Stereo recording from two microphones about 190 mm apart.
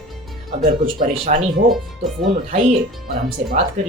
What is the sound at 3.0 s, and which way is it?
Speech, 50° right (ahead or behind).